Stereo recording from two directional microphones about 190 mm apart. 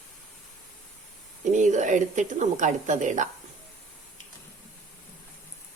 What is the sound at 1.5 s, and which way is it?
Speech, 40° right (ahead or behind).